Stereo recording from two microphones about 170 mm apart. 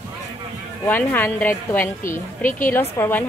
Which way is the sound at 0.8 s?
10° left (ahead or behind).